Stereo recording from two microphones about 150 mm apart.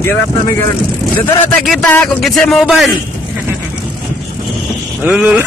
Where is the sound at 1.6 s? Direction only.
Centre (ahead or behind).